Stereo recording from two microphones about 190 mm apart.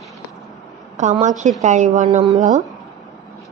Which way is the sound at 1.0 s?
40° right (ahead or behind).